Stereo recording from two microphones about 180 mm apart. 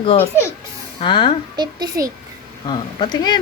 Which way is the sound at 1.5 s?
25° right (ahead or behind).